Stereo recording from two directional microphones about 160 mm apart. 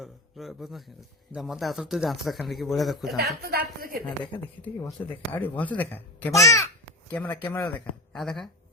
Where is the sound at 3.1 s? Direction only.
80° right.